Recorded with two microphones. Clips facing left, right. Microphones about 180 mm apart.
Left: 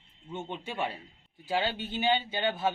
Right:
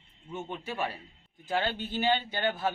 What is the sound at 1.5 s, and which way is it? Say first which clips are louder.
Speech: even; 10° left (ahead or behind).